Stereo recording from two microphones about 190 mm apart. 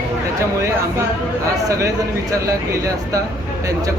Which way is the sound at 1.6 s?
15° right (ahead or behind).